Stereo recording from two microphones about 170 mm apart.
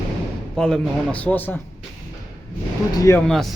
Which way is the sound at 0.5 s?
5° left (ahead or behind).